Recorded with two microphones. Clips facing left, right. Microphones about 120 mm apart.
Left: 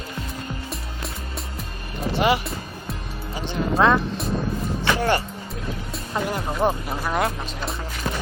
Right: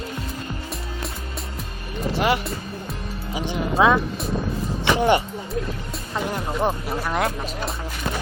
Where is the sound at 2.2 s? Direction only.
Centre (ahead or behind).